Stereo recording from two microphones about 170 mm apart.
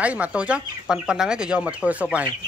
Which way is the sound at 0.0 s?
10° right (ahead or behind).